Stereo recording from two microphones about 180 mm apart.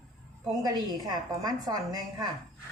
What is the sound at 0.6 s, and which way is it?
A woman's voice, 20° right (ahead or behind).